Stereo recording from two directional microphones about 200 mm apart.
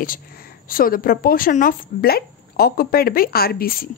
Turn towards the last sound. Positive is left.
turn(degrees=45)  # may be behind; listen again after turning